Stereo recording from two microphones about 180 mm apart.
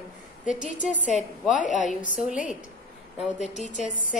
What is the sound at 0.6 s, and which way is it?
A woman's voice, 45° left (ahead or behind).